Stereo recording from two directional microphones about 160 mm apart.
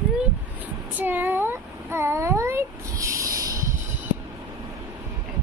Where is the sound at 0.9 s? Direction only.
10° right (ahead or behind).